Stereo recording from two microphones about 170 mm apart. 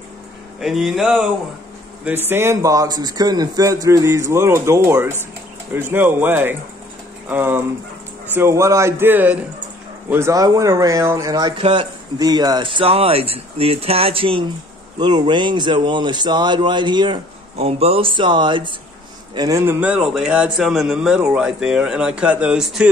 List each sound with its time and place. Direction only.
0.6 s a man's voice: centre (ahead or behind)
2.0 s a man's voice: 10° right (ahead or behind)